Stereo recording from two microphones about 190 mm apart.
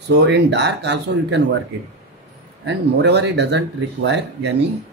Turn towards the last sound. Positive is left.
turn(degrees=-65)  # may be behind; listen again after turning